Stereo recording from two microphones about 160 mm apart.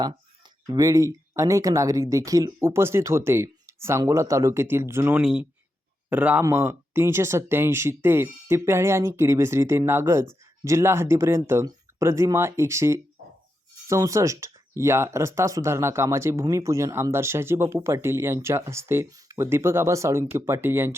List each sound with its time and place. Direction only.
0.7 s speech: 20° right (ahead or behind)